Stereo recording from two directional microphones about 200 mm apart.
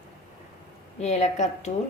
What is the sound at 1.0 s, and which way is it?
Speech, 35° left (ahead or behind).